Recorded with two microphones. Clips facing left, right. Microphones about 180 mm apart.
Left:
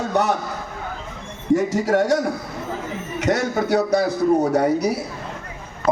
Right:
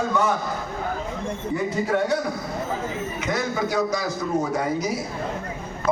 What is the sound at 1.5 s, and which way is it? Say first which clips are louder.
Speech: left 5 dB; 85° left.